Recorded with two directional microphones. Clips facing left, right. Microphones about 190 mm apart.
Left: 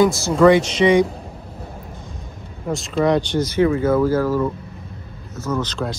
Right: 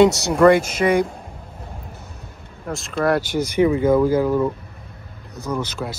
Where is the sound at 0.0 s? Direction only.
70° right (ahead or behind).